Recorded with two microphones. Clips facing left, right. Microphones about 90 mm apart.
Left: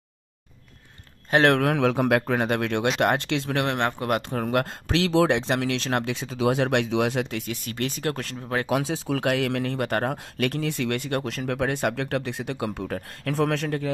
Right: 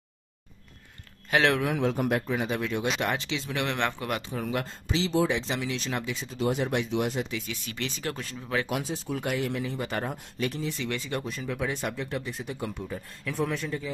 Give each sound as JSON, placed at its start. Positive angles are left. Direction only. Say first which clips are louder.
{"t": 1.5, "sound": "speech", "louder": "left 5 dB", "side_deg": 65}
{"t": 4.3, "sound": "speech", "louder": "left 6 dB", "side_deg": 60}
{"t": 8.7, "sound": "speech", "louder": "left 6 dB", "side_deg": 90}